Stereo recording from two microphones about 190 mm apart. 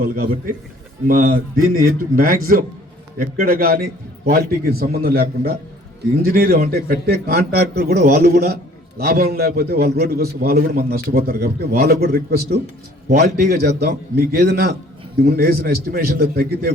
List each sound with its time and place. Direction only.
0.0 s a man's voice: 50° right (ahead or behind)